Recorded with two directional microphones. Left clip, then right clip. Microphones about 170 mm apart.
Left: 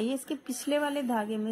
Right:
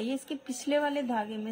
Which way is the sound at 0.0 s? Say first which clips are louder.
Left 2 dB; 10° left (ahead or behind).